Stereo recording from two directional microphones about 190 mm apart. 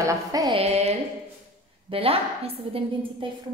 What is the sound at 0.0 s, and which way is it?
Music, 20° right (ahead or behind).